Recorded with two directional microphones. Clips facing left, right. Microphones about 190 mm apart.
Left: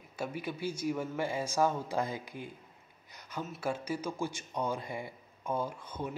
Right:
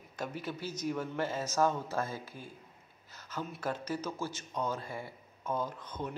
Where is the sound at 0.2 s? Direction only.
10° left (ahead or behind).